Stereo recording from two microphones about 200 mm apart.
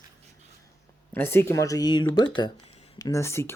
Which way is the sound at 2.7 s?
30° left (ahead or behind).